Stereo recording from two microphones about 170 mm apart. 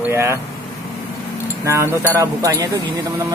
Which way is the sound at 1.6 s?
15° right (ahead or behind).